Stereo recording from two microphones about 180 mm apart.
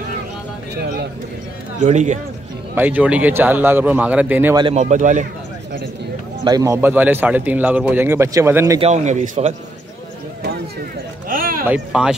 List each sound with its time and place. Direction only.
1.9 s a man's voice: 40° right (ahead or behind)
2.7 s speech: 10° right (ahead or behind)
4.7 s speech: 40° right (ahead or behind)
6.4 s speech: 20° right (ahead or behind)
8.8 s a man's voice: 40° right (ahead or behind)
11.2 s a sound: 50° right (ahead or behind)
11.6 s speech: 5° right (ahead or behind)